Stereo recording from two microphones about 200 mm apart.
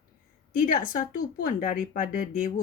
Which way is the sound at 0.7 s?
45° left (ahead or behind).